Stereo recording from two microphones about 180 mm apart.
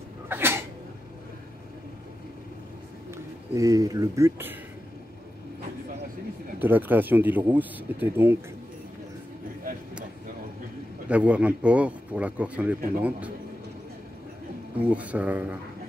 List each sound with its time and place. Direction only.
0.3 s sneeze: 10° right (ahead or behind)
3.1 s speech: 20° right (ahead or behind)
6.6 s speech: 10° right (ahead or behind)
11.1 s speech: 5° right (ahead or behind)
14.9 s speech: 10° right (ahead or behind)